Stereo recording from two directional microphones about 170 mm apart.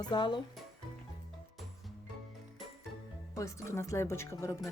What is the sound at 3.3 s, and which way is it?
Speech, 15° left (ahead or behind).